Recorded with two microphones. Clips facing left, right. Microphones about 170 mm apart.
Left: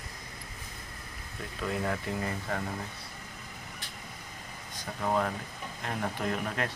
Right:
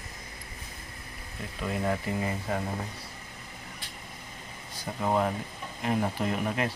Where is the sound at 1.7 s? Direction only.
10° right (ahead or behind).